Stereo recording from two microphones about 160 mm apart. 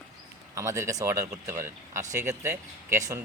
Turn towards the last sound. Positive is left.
turn(degrees=-15)  # may be behind; listen again after turning